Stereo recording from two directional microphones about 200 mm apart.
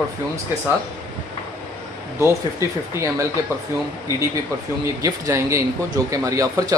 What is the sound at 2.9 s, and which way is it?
Speech, 15° right (ahead or behind).